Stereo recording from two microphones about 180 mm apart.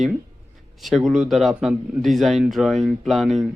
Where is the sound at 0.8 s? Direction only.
Centre (ahead or behind).